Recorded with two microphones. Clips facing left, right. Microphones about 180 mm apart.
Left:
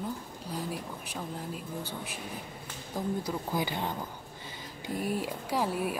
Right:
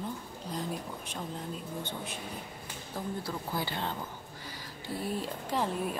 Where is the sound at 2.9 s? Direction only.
15° left (ahead or behind).